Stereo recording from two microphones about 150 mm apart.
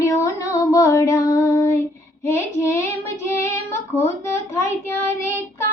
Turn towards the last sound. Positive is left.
turn(degrees=15)  # may be behind; listen again after turning